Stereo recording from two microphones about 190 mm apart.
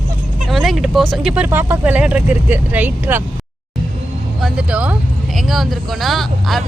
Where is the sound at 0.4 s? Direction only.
Centre (ahead or behind).